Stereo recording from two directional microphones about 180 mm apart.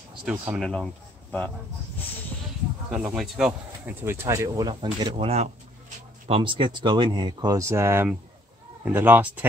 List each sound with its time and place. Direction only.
0.2 s speech: 5° right (ahead or behind)
2.9 s speech: 5° right (ahead or behind)
4.0 s speech: 15° right (ahead or behind)
5.1 s speech: 35° right (ahead or behind); by 9.5 s 10° right (ahead or behind)